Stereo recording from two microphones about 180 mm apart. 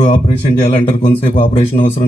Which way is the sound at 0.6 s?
40° left (ahead or behind).